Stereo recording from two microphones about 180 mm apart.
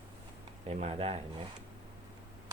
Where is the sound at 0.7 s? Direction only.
35° right (ahead or behind).